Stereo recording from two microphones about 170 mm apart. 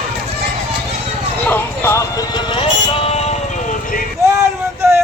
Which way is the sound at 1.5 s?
15° left (ahead or behind).